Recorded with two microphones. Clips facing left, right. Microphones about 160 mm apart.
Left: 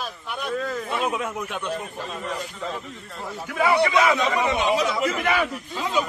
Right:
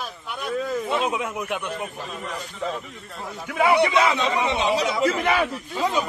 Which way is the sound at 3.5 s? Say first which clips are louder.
Right 1 dB; 20° right (ahead or behind).